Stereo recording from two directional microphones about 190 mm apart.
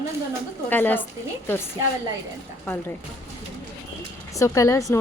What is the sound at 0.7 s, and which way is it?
Speech, 10° left (ahead or behind).